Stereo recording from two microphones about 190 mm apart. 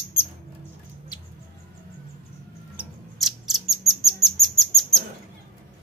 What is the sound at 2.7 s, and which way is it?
Bird, centre (ahead or behind).